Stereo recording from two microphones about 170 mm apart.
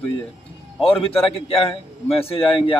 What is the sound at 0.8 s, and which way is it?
A man's voice, 35° left (ahead or behind).